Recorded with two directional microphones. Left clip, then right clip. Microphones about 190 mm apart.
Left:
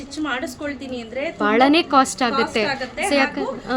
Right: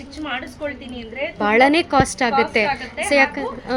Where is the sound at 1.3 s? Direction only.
5° right (ahead or behind).